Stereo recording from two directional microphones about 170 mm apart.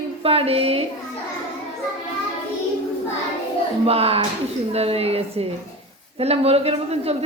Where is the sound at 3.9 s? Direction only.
35° right (ahead or behind).